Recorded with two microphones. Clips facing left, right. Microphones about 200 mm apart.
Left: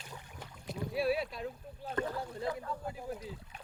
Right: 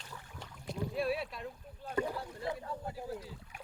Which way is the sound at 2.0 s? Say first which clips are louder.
Right 1 dB; 10° right (ahead or behind).